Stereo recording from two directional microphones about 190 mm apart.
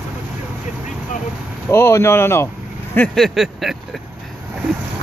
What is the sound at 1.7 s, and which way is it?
Speech, 15° left (ahead or behind).